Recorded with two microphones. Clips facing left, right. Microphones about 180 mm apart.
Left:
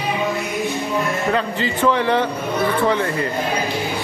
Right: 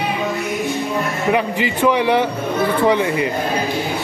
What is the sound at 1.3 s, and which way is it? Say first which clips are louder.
A man's voice: right 3 dB; 15° right (ahead or behind).